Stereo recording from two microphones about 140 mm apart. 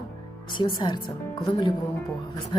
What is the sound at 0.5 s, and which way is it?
Music, 35° left (ahead or behind).